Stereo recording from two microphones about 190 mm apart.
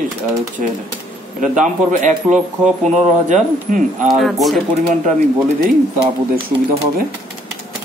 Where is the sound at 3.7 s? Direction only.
40° right (ahead or behind).